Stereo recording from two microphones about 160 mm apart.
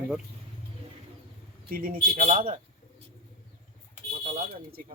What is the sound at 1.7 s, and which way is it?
Speech, 60° right (ahead or behind).